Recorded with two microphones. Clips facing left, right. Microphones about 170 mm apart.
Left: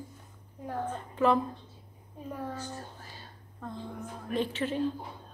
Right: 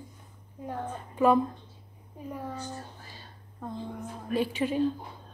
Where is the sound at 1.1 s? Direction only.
15° right (ahead or behind).